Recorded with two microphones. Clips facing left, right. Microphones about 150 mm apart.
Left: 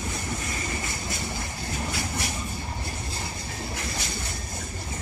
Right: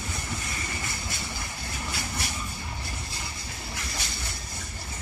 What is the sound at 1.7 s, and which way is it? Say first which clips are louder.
Vehicle: left 4 dB; 55° left (ahead or behind).